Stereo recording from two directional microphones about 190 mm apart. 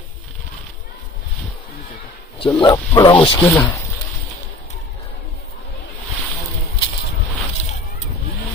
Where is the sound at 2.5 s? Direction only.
20° left (ahead or behind).